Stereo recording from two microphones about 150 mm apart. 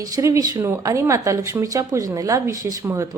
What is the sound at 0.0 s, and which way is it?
A woman's voice, 20° right (ahead or behind).